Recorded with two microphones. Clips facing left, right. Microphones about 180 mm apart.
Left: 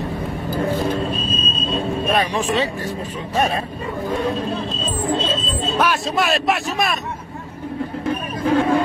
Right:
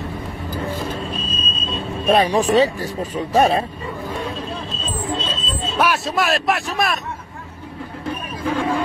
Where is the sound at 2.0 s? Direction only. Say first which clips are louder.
Right 7 dB; 30° right (ahead or behind).